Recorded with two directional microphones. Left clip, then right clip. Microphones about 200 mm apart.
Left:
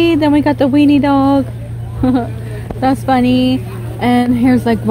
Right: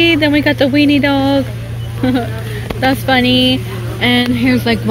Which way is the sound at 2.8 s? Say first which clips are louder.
Right 1 dB; 20° left (ahead or behind).